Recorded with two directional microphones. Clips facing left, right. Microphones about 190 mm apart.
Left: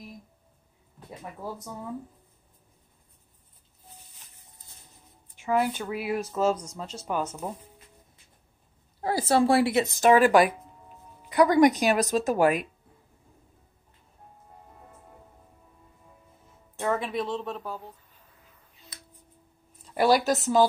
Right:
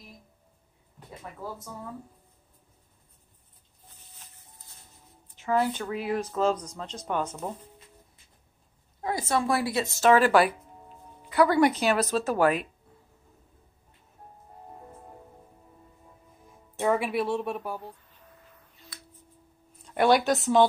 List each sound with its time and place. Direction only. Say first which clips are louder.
5.4 s speech: even; 10° left (ahead or behind)
9.0 s speech: left 5 dB; 30° left (ahead or behind); by 12.6 s 10° left (ahead or behind)
16.8 s speech: right 3 dB; 10° right (ahead or behind)
18.9 s a sound: right 1 dB; 20° left (ahead or behind)
19.9 s speech: even; centre (ahead or behind)